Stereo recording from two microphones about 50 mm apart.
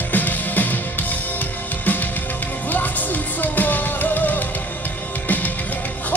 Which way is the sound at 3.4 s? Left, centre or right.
Left.